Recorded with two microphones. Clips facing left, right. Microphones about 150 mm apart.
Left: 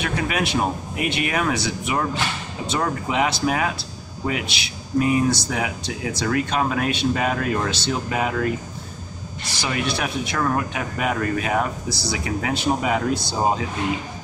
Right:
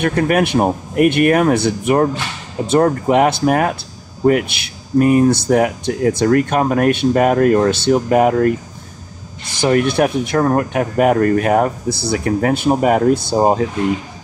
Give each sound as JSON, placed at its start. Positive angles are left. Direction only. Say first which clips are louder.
{"t": 0.0, "sound": "speech", "louder": "right 9 dB", "side_deg": -50}